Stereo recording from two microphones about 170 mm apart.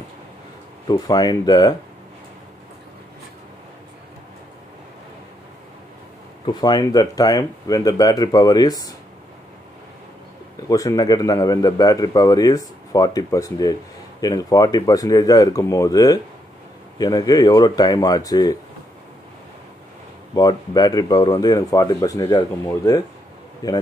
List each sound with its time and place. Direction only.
0.8 s a man's voice: 25° left (ahead or behind)
6.4 s a man's voice: 25° left (ahead or behind)
10.7 s a man's voice: 20° left (ahead or behind)
20.3 s a man's voice: 20° left (ahead or behind)
23.6 s a man's voice: 20° left (ahead or behind)